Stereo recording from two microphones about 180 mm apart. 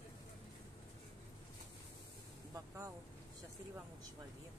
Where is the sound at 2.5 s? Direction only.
15° right (ahead or behind).